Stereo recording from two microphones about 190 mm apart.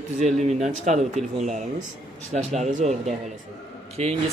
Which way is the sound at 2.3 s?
35° right (ahead or behind).